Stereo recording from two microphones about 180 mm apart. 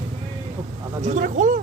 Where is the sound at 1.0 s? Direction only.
45° right (ahead or behind).